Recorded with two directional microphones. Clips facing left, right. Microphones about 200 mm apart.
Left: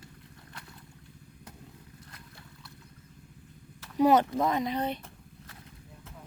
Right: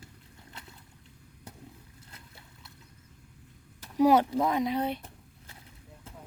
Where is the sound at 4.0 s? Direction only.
10° right (ahead or behind).